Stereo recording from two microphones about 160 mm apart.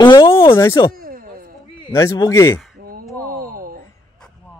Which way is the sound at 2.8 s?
65° right (ahead or behind).